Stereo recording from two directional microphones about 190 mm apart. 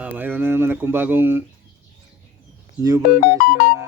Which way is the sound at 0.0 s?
10° right (ahead or behind).